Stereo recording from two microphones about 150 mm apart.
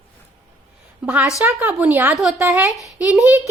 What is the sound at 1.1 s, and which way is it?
A woman's voice, 10° right (ahead or behind).